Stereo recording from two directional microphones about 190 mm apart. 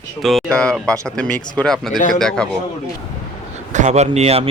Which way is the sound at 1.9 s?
45° left (ahead or behind).